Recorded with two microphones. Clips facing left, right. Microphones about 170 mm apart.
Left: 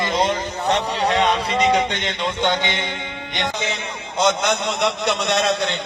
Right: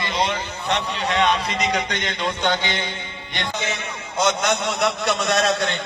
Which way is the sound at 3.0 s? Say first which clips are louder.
Left 5 dB; 85° left.